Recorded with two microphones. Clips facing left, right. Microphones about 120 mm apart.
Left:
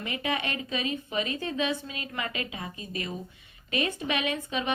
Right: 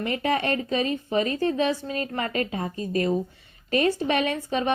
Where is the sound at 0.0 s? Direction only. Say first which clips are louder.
Right 7 dB; 45° right (ahead or behind).